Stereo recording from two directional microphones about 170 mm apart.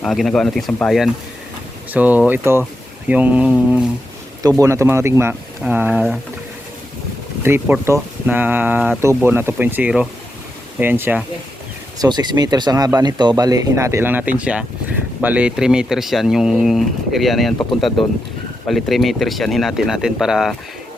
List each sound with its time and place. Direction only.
0.0 s speech: centre (ahead or behind)
7.4 s speech: 15° right (ahead or behind)
11.9 s speech: 25° right (ahead or behind); by 17.5 s centre (ahead or behind)
17.6 s speech: 30° left (ahead or behind)
18.7 s speech: centre (ahead or behind)